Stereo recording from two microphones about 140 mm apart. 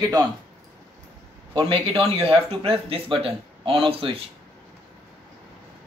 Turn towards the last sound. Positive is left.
turn(degrees=-40)  # may be behind; listen again after turning